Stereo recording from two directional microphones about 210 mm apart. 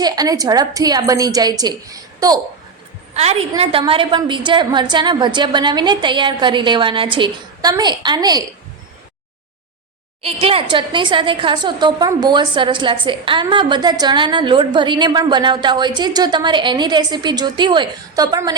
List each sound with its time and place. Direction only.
0.0 s a woman's voice: 20° right (ahead or behind)
3.5 s a woman's voice: 25° right (ahead or behind)
10.4 s a woman's voice: 25° right (ahead or behind)